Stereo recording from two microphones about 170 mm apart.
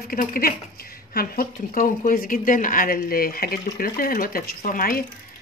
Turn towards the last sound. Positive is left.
turn(degrees=55)  # may be behind; listen again after turning